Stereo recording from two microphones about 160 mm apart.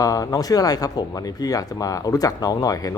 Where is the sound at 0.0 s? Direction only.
20° left (ahead or behind).